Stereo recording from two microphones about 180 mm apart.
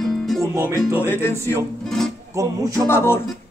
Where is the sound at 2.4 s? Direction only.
15° right (ahead or behind).